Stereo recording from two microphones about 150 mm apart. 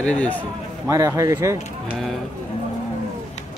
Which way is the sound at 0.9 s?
20° right (ahead or behind).